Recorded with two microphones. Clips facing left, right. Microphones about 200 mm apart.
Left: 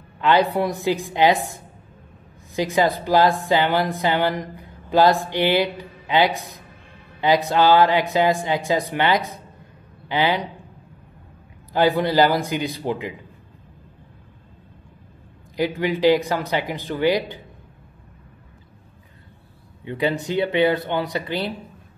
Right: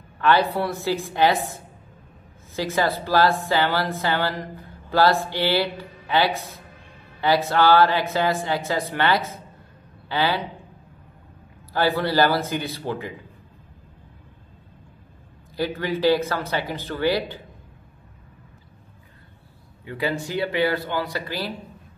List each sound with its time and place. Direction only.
0.2 s a woman's voice: 15° left (ahead or behind)
11.7 s a woman's voice: 15° left (ahead or behind)
15.5 s a woman's voice: 15° left (ahead or behind)
19.8 s speech: 20° left (ahead or behind)